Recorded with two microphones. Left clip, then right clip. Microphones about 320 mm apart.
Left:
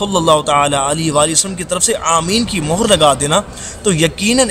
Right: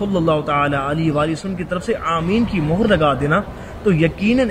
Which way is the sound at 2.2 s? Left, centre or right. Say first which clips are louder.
Left 3 dB; left.